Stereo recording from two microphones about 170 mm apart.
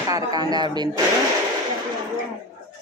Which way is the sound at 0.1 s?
25° right (ahead or behind).